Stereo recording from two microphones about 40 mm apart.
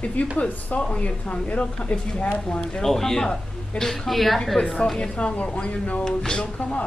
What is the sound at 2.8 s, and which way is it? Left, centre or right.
Speech, centre.